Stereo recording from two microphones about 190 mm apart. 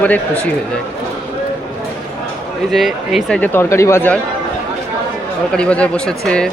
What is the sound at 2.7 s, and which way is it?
A man's voice, centre (ahead or behind).